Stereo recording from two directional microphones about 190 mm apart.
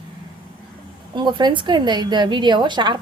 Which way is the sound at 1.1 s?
25° right (ahead or behind).